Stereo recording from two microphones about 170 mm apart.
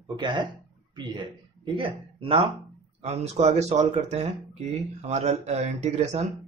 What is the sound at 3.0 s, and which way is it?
Speech, 40° right (ahead or behind).